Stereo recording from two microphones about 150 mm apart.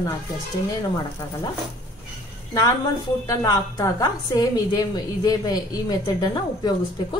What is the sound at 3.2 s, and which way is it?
A woman's voice, 25° left (ahead or behind).